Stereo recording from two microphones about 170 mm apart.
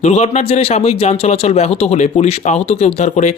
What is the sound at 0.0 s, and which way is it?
Speech, 40° left (ahead or behind).